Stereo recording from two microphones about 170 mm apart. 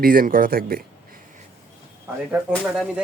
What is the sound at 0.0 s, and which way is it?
Speech, 55° right (ahead or behind).